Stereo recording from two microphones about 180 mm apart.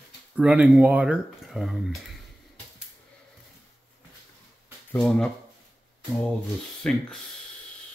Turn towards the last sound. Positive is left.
turn(degrees=5)  # may be behind; listen again after turning